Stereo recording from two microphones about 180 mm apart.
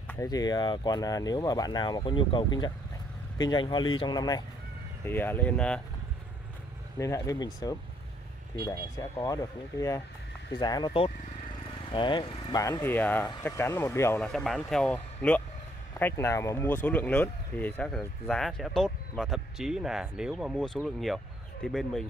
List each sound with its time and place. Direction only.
0.1 s speech: 20° left (ahead or behind)
5.0 s speech: 10° left (ahead or behind)
7.0 s speech: 20° left (ahead or behind)